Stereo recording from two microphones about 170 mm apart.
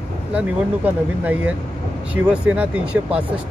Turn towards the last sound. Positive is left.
turn(degrees=-5)  # may be behind; listen again after turning